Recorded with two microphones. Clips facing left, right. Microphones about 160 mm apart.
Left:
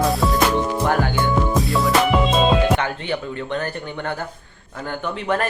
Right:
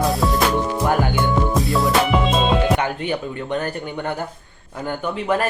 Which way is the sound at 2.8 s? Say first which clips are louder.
Right 2 dB; 15° right (ahead or behind).